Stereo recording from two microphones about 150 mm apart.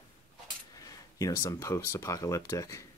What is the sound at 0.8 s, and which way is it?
Speech, 20° left (ahead or behind).